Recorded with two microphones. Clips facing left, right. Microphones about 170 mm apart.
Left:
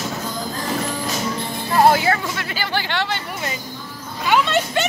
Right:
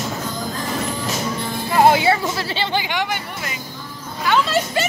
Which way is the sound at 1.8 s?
20° right (ahead or behind).